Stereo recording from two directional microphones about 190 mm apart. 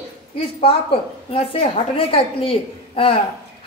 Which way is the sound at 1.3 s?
30° left (ahead or behind).